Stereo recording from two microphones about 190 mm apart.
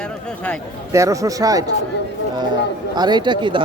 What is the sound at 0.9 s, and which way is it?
Speech, 15° right (ahead or behind).